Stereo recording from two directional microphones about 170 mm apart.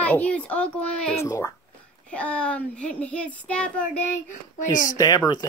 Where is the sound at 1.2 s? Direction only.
15° left (ahead or behind).